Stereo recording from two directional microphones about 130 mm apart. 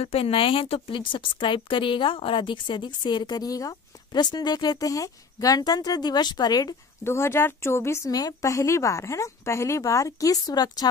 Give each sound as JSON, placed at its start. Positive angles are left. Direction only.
{"t": 0.0, "sound": "a woman's voice", "side_deg": 45}